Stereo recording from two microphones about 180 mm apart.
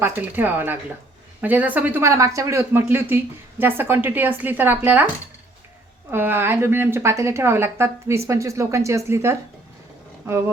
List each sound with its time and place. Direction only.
0.0 s speech: 10° right (ahead or behind)
6.1 s speech: 10° right (ahead or behind)